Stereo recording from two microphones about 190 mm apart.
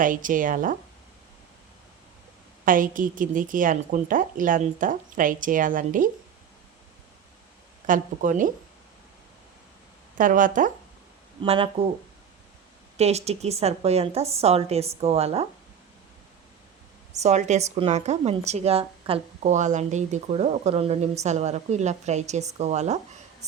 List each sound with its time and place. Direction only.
0.0 s a woman's voice: 45° right (ahead or behind)
2.6 s a woman's voice: 45° right (ahead or behind)
7.9 s a woman's voice: 45° right (ahead or behind)
10.2 s a woman's voice: 45° right (ahead or behind)
11.4 s speech: 30° right (ahead or behind)
13.0 s a woman's voice: 35° right (ahead or behind)
17.2 s a woman's voice: 35° right (ahead or behind)